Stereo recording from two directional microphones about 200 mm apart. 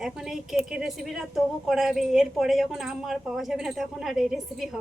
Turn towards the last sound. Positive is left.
turn(degrees=0)  # may be behind; listen again after turning